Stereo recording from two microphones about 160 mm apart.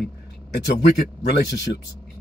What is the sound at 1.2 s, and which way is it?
Speech, 90° left.